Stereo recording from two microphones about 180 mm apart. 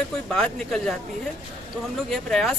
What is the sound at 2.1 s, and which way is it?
Speech, centre (ahead or behind).